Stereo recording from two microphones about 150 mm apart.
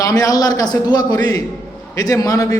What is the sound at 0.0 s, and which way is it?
A man's voice, 25° left (ahead or behind).